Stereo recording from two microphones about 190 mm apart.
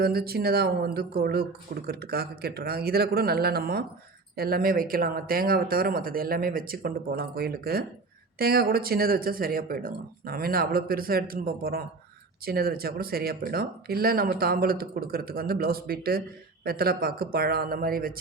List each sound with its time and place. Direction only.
0.0 s speech: 55° right (ahead or behind)